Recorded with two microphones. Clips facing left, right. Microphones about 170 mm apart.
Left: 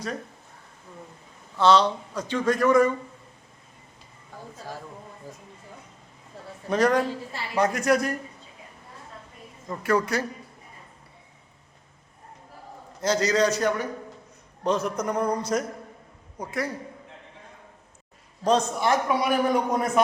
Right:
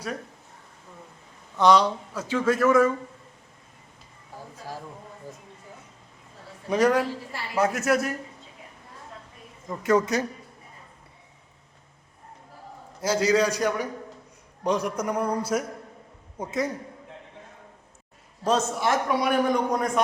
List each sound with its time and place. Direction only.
1.5 s a man's voice: 15° right (ahead or behind)
5.3 s a man's voice: centre (ahead or behind)
6.7 s a man's voice: 10° right (ahead or behind)
9.8 s speech: 20° right (ahead or behind)
13.0 s a man's voice: 10° right (ahead or behind)
16.4 s speech: 20° right (ahead or behind)
18.4 s a man's voice: 5° right (ahead or behind)